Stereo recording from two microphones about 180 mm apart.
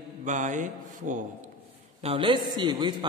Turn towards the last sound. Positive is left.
turn(degrees=-25)  # may be behind; listen again after turning